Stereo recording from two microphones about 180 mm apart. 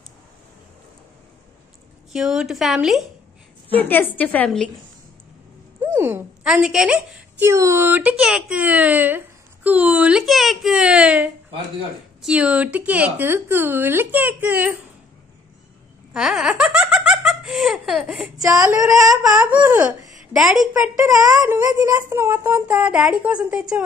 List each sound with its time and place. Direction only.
2.1 s a woman's voice: 5° right (ahead or behind)
3.6 s a woman's voice: 10° left (ahead or behind)
5.8 s a woman's voice: 10° right (ahead or behind)
16.1 s speech: 5° right (ahead or behind)
18.6 s a woman's voice: 20° right (ahead or behind)
21.0 s a woman's voice: 15° right (ahead or behind)